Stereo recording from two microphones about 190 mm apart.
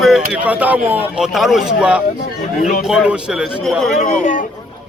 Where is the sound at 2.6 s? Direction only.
45° left (ahead or behind).